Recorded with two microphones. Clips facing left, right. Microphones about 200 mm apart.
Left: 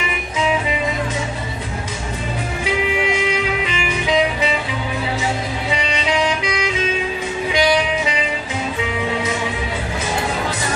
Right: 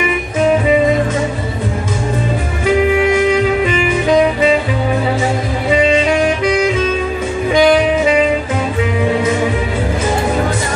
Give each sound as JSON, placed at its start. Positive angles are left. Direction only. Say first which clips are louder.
{"t": 2.6, "sound": "music", "louder": "right 9 dB", "side_deg": -50}
{"t": 5.7, "sound": "music", "louder": "right 11 dB", "side_deg": -50}